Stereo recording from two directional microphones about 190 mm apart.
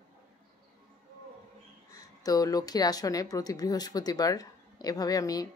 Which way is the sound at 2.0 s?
20° left (ahead or behind).